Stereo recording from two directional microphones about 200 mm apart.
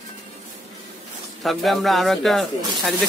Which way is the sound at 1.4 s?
Centre (ahead or behind).